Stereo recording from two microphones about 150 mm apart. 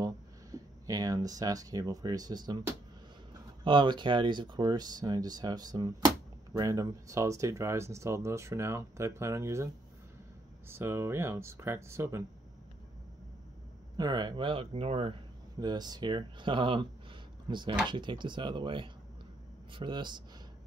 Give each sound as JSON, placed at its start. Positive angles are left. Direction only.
{"t": 0.0, "sound": "speech", "side_deg": -25}
{"t": 3.6, "sound": "speech", "side_deg": -30}
{"t": 10.7, "sound": "speech", "side_deg": -15}
{"t": 13.9, "sound": "speech", "side_deg": -30}
{"t": 15.6, "sound": "speech", "side_deg": -30}